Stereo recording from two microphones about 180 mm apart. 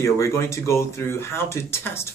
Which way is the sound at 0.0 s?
15° left (ahead or behind).